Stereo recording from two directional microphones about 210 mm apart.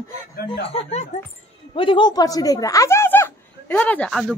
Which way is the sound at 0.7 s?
30° left (ahead or behind).